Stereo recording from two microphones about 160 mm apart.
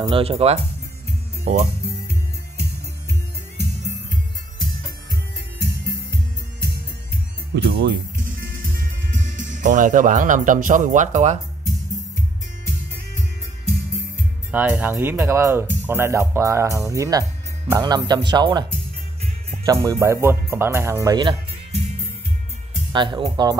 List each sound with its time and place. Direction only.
0.0 s speech: 35° right (ahead or behind)
5.6 s music: 90° right
7.5 s music: 90° right; by 11.3 s 50° right (ahead or behind)
14.5 s speech: 10° right (ahead or behind); by 21.4 s 25° right (ahead or behind)
22.9 s speech: 30° right (ahead or behind)